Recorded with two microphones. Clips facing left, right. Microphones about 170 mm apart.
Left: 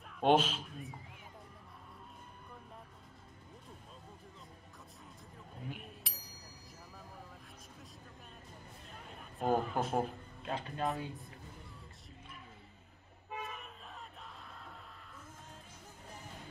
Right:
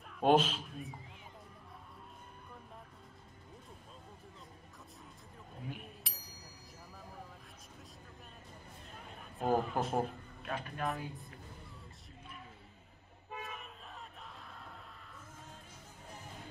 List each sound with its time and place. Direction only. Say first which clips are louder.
0.2 s speech: right 1 dB; centre (ahead or behind)
5.7 s a sound: even; centre (ahead or behind)
9.1 s a man's voice: even; centre (ahead or behind)
10.4 s speech: left 2 dB; 25° left (ahead or behind)
13.4 s toot: left 1 dB; centre (ahead or behind)